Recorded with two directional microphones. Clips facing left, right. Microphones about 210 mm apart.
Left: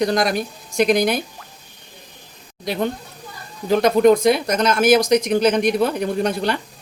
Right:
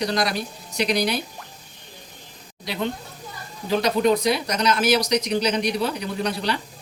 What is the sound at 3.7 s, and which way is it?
Speech, 50° left (ahead or behind).